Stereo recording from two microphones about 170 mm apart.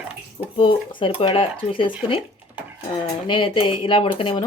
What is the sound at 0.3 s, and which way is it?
Speech, 30° left (ahead or behind).